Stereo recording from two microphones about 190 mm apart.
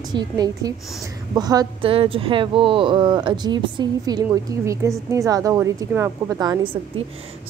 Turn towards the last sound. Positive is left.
turn(degrees=-25)  # may be behind; listen again after turning